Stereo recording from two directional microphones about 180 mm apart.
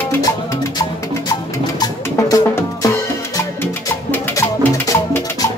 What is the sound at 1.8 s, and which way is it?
Music, 20° left (ahead or behind).